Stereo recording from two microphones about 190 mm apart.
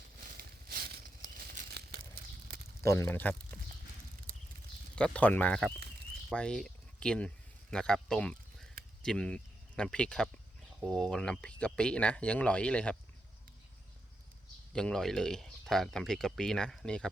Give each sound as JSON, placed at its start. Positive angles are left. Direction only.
{"t": 0.2, "sound": "a sound", "side_deg": -45}
{"t": 2.8, "sound": "speech", "side_deg": 15}
{"t": 4.9, "sound": "speech", "side_deg": 5}
{"t": 14.7, "sound": "speech", "side_deg": 5}